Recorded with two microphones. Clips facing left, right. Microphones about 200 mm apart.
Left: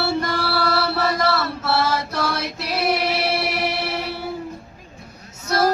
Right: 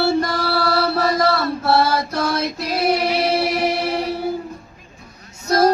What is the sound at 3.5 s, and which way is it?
Music, 45° right (ahead or behind).